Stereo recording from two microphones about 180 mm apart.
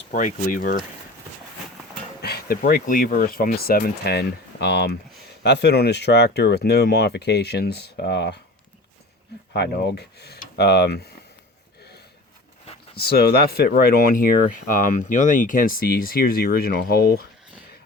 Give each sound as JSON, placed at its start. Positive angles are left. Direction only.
{"t": 0.1, "sound": "speech", "side_deg": 50}
{"t": 2.2, "sound": "speech", "side_deg": 60}
{"t": 9.5, "sound": "speech", "side_deg": 65}
{"t": 12.7, "sound": "a sound", "side_deg": 35}
{"t": 13.0, "sound": "speech", "side_deg": 60}